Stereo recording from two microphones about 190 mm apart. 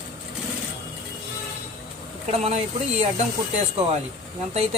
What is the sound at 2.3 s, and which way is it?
Speech, 35° right (ahead or behind).